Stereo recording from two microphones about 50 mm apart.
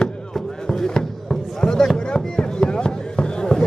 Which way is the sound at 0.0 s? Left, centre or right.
Centre.